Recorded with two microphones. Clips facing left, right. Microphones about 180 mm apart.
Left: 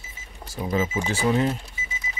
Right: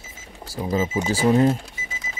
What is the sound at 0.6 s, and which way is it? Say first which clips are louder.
Speech: right 2 dB; 35° right (ahead or behind).